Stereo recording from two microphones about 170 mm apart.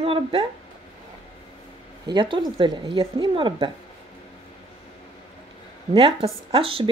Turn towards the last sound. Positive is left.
turn(degrees=-30)  # may be behind; listen again after turning